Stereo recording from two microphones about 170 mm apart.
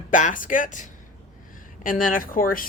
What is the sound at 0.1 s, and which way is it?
Speech, 50° left (ahead or behind).